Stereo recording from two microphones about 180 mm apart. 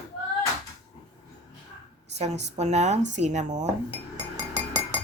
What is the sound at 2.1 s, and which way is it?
Speech, 40° right (ahead or behind).